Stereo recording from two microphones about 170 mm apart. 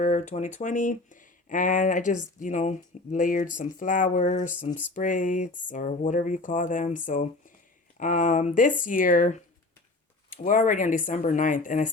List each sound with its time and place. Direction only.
0.0 s speech: 45° left (ahead or behind)